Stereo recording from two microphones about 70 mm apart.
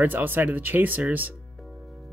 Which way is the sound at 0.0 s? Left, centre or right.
Right.